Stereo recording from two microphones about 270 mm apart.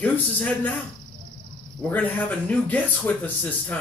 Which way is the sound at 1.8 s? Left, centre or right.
Centre.